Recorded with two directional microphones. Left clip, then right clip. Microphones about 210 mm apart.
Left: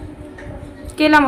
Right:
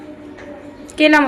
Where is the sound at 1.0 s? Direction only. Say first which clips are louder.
Right 1 dB; 5° left (ahead or behind).